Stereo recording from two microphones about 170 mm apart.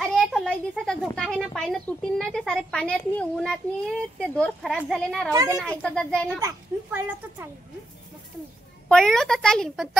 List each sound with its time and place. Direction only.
0.0 s a child's voice: centre (ahead or behind)
5.3 s a child's voice: 15° right (ahead or behind)
5.6 s speech: centre (ahead or behind)
6.4 s a child's voice: 10° right (ahead or behind)
8.8 s speech: 5° left (ahead or behind)